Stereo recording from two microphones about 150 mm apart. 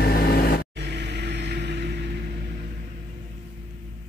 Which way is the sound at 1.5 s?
90° right.